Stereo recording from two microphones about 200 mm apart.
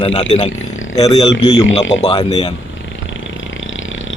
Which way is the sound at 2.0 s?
25° left (ahead or behind).